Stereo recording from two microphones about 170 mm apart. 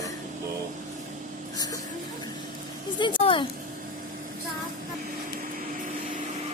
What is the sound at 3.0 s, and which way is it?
Speech, 30° left (ahead or behind).